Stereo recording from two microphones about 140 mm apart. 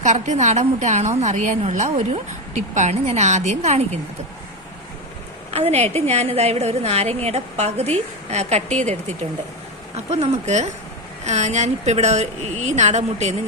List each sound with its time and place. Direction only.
0.0 s a woman's voice: 55° right (ahead or behind)
5.5 s a woman's voice: 45° right (ahead or behind)